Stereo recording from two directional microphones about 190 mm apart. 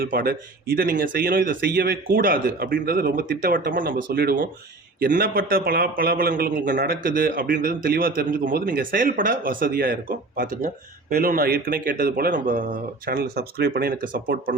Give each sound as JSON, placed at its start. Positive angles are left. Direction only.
{"t": 0.0, "sound": "a man's voice", "side_deg": -50}